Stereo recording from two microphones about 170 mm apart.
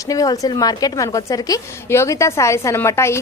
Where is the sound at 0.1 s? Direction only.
20° left (ahead or behind).